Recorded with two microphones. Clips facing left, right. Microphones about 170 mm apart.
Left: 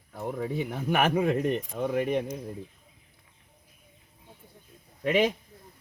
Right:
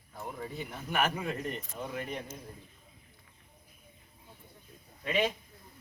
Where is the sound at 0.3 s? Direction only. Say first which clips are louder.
Left 11 dB; 65° left (ahead or behind).